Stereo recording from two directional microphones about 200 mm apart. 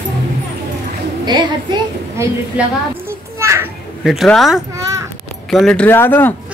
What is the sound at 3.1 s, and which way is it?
Children playing, 15° right (ahead or behind).